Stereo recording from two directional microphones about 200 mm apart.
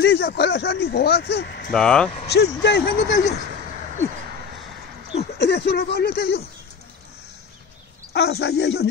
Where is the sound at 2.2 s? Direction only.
55° left (ahead or behind).